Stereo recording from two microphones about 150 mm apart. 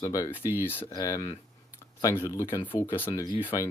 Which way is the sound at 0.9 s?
25° left (ahead or behind).